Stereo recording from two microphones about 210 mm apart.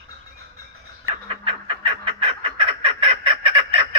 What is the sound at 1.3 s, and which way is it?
Fowl, 25° right (ahead or behind).